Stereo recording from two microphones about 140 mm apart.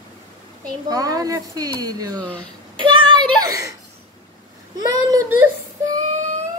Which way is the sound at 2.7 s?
35° right (ahead or behind).